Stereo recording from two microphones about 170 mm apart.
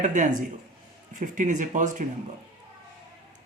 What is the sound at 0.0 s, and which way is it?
Speech, 45° right (ahead or behind).